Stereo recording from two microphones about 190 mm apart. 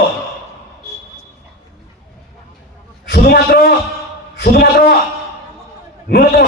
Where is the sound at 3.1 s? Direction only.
55° left (ahead or behind).